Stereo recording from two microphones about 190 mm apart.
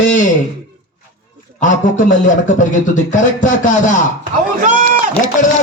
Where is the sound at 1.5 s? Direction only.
40° left (ahead or behind).